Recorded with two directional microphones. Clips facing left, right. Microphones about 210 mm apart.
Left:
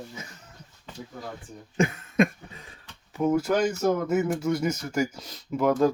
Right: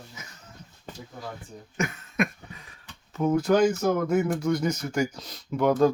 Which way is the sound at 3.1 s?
5° left (ahead or behind).